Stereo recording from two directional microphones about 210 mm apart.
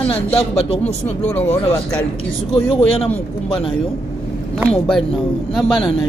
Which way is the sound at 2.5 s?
25° left (ahead or behind).